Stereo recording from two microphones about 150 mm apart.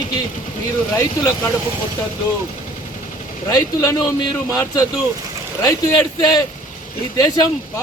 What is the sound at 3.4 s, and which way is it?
Speech, 25° left (ahead or behind).